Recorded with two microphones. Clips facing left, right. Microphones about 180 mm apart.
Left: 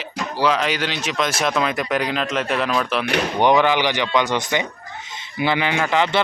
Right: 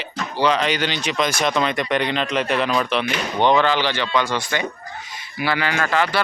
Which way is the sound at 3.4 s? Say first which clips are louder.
Even; 15° left (ahead or behind).